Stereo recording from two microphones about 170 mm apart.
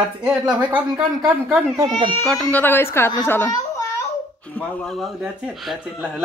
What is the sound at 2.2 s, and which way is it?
A child's voice, centre (ahead or behind).